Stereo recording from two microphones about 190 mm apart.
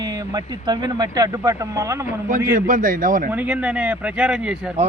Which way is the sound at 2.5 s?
45° right (ahead or behind).